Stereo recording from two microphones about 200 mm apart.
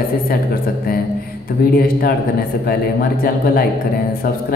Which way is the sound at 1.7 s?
45° left (ahead or behind).